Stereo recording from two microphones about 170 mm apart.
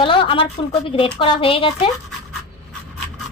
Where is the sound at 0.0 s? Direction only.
30° left (ahead or behind).